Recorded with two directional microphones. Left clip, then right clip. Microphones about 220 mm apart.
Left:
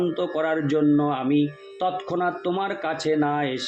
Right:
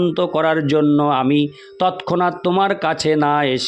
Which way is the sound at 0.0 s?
50° right (ahead or behind).